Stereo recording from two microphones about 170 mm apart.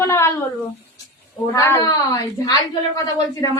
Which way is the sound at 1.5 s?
20° left (ahead or behind).